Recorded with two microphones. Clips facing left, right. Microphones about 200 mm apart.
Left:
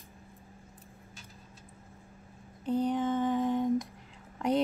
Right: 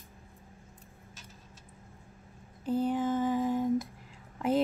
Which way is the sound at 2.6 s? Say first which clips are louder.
Even; 5° right (ahead or behind).